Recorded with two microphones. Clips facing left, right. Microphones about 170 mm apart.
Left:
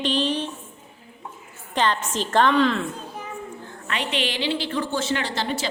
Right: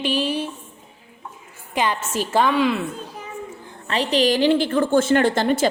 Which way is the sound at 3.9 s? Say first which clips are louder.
Right 8 dB; 35° right (ahead or behind).